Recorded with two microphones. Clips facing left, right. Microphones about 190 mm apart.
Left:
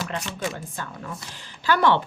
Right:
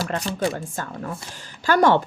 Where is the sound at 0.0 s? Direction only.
40° right (ahead or behind).